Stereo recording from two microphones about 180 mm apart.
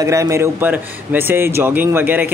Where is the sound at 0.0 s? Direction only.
15° right (ahead or behind).